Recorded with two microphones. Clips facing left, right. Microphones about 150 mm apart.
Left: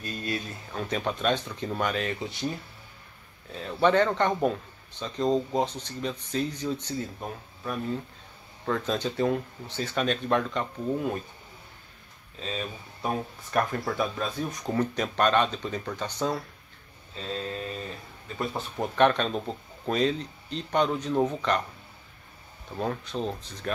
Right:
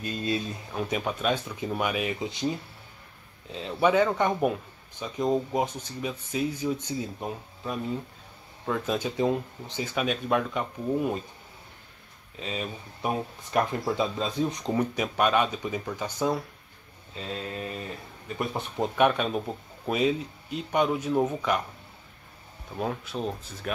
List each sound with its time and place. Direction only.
0.0 s speech: 20° right (ahead or behind)
0.7 s speech: 10° right (ahead or behind)
3.5 s speech: 20° right (ahead or behind)
12.4 s speech: 15° right (ahead or behind)
22.8 s speech: 5° right (ahead or behind)